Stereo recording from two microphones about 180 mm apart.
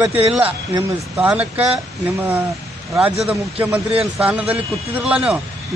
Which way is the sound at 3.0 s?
5° right (ahead or behind).